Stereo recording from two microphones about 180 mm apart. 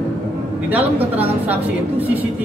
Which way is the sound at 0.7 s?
10° right (ahead or behind).